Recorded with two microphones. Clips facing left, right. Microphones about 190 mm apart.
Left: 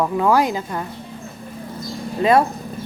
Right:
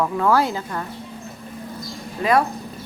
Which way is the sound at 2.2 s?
25° left (ahead or behind).